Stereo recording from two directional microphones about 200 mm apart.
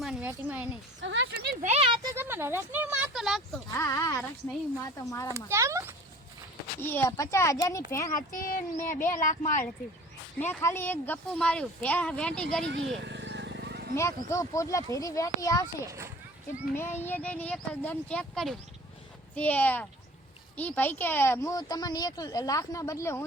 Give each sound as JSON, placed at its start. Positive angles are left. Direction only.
{"t": 0.0, "sound": "a sound", "side_deg": -5}
{"t": 1.0, "sound": "speech", "side_deg": -65}
{"t": 1.6, "sound": "speech", "side_deg": -30}
{"t": 2.1, "sound": "speech", "side_deg": -10}
{"t": 3.8, "sound": "speech", "side_deg": 15}
{"t": 5.5, "sound": "speech", "side_deg": -15}
{"t": 6.8, "sound": "speech", "side_deg": 10}
{"t": 8.1, "sound": "speech", "side_deg": 45}
{"t": 10.4, "sound": "speech", "side_deg": 10}
{"t": 13.0, "sound": "vehicle", "side_deg": -60}
{"t": 13.9, "sound": "speech", "side_deg": 15}
{"t": 15.9, "sound": "speech", "side_deg": -15}
{"t": 16.7, "sound": "speech", "side_deg": 10}